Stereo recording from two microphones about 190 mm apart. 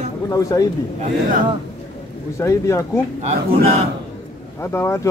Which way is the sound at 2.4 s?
15° left (ahead or behind).